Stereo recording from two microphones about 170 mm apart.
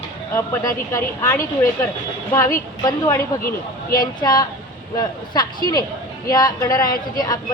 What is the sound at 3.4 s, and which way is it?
Speech, 60° left (ahead or behind).